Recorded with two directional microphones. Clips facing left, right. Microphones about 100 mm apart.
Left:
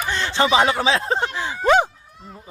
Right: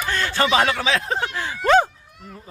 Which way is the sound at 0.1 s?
25° left (ahead or behind).